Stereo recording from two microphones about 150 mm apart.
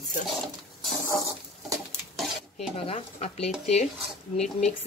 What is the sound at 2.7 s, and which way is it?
Speech, 40° left (ahead or behind).